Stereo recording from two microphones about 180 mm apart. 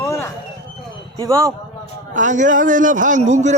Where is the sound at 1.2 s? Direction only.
15° right (ahead or behind).